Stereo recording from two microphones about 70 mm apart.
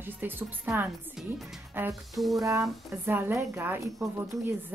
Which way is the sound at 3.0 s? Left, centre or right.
Right.